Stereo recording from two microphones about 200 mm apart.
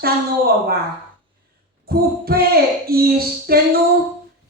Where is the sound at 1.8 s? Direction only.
50° right (ahead or behind).